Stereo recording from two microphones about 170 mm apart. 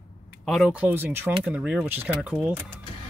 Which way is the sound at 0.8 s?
10° right (ahead or behind).